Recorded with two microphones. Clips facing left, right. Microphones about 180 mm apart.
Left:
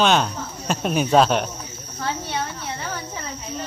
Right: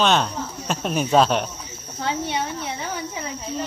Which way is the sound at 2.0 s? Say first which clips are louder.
Right 2 dB; 15° right (ahead or behind).